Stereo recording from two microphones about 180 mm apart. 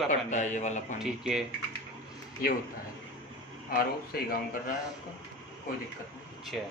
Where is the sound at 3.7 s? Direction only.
55° left (ahead or behind).